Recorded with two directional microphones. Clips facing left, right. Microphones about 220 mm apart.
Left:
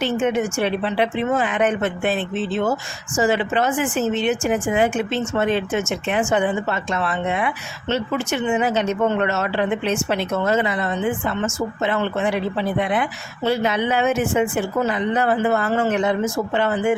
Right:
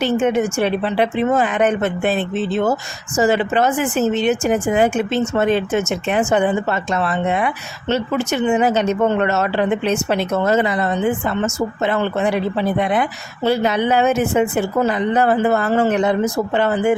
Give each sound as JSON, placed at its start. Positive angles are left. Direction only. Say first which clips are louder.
{"t": 0.0, "sound": "speech", "louder": "right 3 dB", "side_deg": -40}